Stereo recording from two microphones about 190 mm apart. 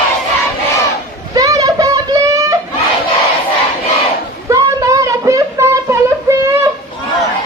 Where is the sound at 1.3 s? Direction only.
20° right (ahead or behind).